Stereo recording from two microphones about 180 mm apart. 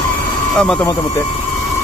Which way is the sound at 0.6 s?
5° left (ahead or behind).